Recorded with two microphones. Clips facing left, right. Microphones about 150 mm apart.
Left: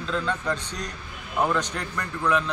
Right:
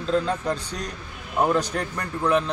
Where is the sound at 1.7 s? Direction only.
40° right (ahead or behind).